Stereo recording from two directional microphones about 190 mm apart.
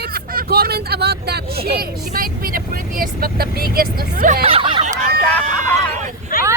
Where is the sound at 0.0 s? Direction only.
55° right (ahead or behind).